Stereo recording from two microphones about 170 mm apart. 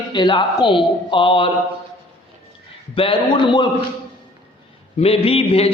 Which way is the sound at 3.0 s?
30° left (ahead or behind).